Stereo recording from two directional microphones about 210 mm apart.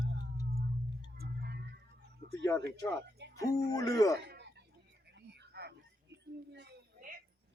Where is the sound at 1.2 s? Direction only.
50° right (ahead or behind).